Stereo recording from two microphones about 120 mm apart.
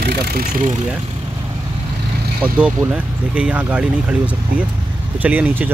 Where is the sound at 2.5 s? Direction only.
10° right (ahead or behind).